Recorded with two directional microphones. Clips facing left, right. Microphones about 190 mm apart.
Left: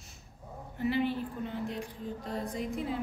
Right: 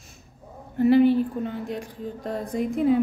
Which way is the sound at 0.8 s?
45° right (ahead or behind).